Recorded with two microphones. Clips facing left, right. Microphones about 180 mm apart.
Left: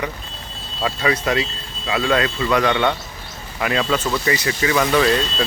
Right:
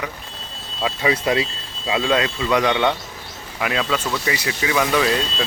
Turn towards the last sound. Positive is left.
turn(degrees=-5)  # may be behind; listen again after turning